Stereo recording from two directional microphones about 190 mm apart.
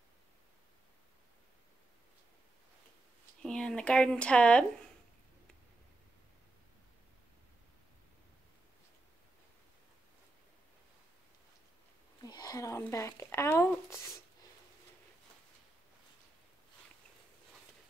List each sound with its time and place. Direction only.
3.4 s speech: 5° left (ahead or behind)
12.2 s speech: 20° left (ahead or behind)